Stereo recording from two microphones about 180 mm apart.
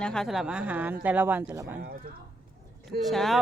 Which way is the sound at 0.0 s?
5° left (ahead or behind).